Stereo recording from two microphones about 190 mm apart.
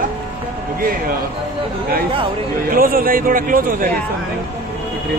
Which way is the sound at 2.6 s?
50° right (ahead or behind).